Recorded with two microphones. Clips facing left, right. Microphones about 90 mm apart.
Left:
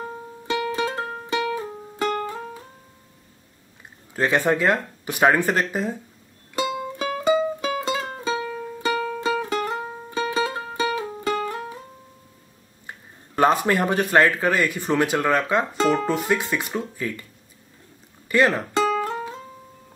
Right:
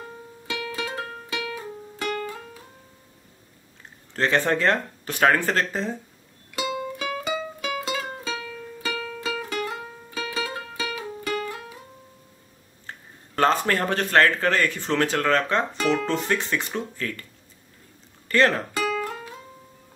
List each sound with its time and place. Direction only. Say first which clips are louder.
0.7 s music: left 6 dB; 30° left (ahead or behind)
4.1 s speech: left 2 dB; 10° left (ahead or behind)
6.5 s music: left 2 dB; 30° left (ahead or behind)
13.4 s speech: left 2 dB; 15° left (ahead or behind)
18.3 s speech: left 1 dB; 10° left (ahead or behind)
18.8 s music: left 5 dB; 20° left (ahead or behind)